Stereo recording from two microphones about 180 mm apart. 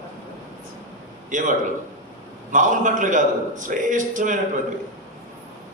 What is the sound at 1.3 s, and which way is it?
A man's voice, 45° right (ahead or behind).